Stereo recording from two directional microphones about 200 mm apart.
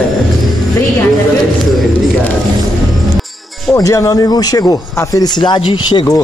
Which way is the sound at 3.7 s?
15° left (ahead or behind).